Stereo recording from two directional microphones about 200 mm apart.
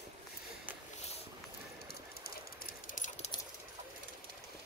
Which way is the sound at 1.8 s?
50° left (ahead or behind).